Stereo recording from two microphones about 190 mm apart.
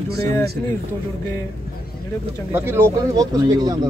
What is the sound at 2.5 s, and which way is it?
Speech, 15° right (ahead or behind).